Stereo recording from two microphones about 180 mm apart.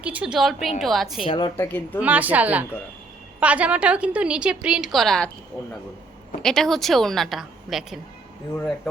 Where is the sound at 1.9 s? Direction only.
10° right (ahead or behind).